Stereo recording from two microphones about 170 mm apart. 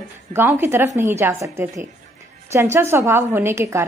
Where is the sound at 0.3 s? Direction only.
15° right (ahead or behind).